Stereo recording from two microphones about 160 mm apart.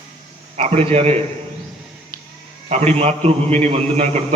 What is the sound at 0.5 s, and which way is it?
Mantra, 40° right (ahead or behind).